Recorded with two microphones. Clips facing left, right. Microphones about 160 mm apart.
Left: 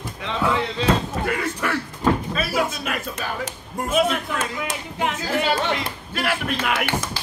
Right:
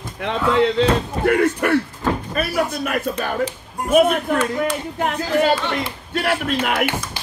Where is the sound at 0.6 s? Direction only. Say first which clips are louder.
Right 6 dB; 55° right (ahead or behind).